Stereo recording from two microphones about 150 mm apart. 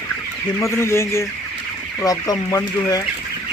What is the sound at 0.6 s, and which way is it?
Speech, 15° left (ahead or behind).